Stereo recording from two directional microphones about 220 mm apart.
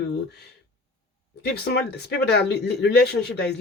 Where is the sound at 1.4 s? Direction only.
50° left (ahead or behind).